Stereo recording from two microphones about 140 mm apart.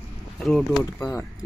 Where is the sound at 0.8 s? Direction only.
20° left (ahead or behind).